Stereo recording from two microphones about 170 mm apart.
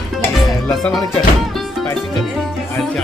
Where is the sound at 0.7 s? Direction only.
Centre (ahead or behind).